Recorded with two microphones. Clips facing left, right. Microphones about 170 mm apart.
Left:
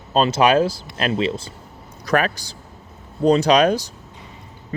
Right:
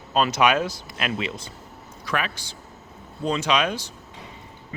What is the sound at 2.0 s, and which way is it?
Speech, 40° left (ahead or behind).